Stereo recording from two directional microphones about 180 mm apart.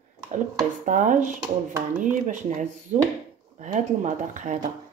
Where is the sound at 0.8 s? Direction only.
45° right (ahead or behind).